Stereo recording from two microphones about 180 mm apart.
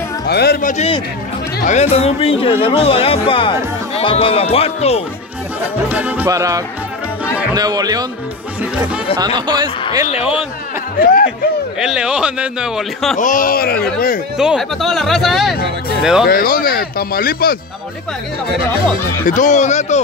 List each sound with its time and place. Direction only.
0.3 s speech: 65° left (ahead or behind); by 5.0 s 35° left (ahead or behind)
5.9 s a man's voice: 10° right (ahead or behind)
8.7 s a man's voice: 5° right (ahead or behind)
9.2 s a man's voice: 25° right (ahead or behind)
11.0 s speech: 55° left (ahead or behind)
11.8 s a man's voice: 5° right (ahead or behind)
13.2 s speech: 50° left (ahead or behind)
14.3 s a man's voice: 5° right (ahead or behind)
16.3 s speech: 55° left (ahead or behind)
19.2 s speech: 45° left (ahead or behind)